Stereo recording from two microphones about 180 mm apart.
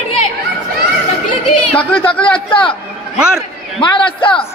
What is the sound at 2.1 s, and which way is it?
Speech, 30° left (ahead or behind).